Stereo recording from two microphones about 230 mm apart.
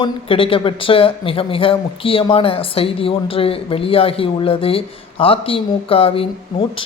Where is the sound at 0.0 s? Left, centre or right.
Left.